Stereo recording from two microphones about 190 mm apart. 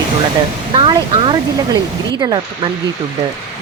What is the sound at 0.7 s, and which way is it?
Speech, 25° right (ahead or behind).